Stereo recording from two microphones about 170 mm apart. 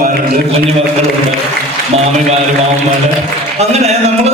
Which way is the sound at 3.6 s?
40° right (ahead or behind).